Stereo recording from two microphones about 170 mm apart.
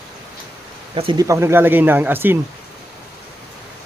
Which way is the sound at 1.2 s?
15° right (ahead or behind).